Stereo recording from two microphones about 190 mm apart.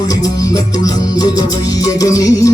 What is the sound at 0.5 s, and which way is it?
Music, 20° left (ahead or behind).